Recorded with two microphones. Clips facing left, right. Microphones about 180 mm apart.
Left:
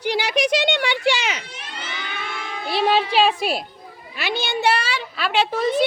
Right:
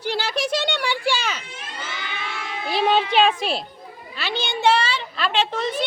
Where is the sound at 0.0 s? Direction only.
15° left (ahead or behind).